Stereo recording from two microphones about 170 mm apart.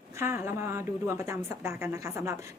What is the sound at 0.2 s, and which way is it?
A woman's voice, 15° right (ahead or behind).